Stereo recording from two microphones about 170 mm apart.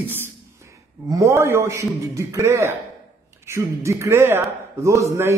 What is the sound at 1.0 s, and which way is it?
A man's voice, 20° right (ahead or behind).